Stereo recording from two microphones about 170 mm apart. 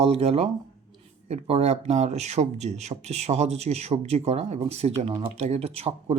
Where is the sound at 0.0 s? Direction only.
35° right (ahead or behind).